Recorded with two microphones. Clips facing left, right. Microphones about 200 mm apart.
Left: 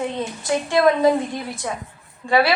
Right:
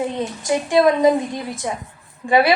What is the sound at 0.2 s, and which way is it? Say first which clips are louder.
Speech: right 2 dB; 20° right (ahead or behind).